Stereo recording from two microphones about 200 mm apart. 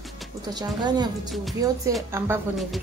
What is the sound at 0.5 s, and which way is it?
Speech, 20° right (ahead or behind).